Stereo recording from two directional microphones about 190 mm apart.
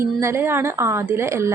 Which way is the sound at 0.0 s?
15° right (ahead or behind).